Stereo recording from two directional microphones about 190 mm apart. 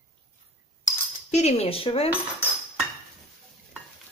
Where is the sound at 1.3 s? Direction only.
35° left (ahead or behind).